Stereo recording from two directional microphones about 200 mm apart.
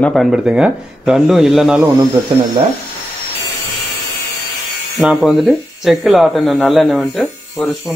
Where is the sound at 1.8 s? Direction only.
15° right (ahead or behind).